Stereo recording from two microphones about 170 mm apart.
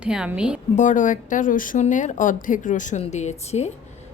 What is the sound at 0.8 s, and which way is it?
A woman's voice, 50° left (ahead or behind).